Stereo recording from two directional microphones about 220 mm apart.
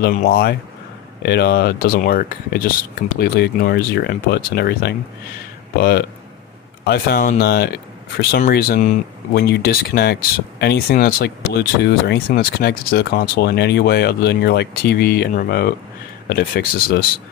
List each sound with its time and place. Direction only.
0.0 s speech: 40° left (ahead or behind)